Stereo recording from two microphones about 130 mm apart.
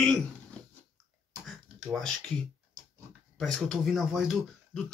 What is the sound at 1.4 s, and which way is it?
Throat clearing, centre (ahead or behind).